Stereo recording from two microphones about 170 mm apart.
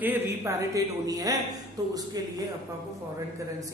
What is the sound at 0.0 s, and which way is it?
Speech, 15° right (ahead or behind).